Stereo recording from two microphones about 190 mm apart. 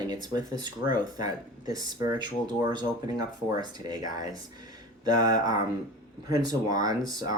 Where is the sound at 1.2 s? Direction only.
20° right (ahead or behind).